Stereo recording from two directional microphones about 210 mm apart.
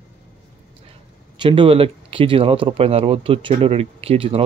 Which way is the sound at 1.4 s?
25° right (ahead or behind).